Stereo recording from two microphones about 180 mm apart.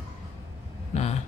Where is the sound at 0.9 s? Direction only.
40° left (ahead or behind).